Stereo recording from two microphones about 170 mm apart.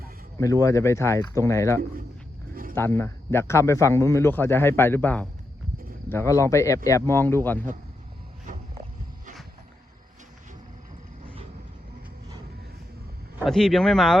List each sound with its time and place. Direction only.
0.3 s speech: 20° left (ahead or behind)
8.5 s a sound: 50° right (ahead or behind)
13.4 s speech: centre (ahead or behind)